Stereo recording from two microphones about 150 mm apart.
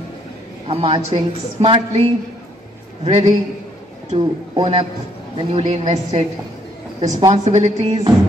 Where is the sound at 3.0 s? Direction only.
45° right (ahead or behind).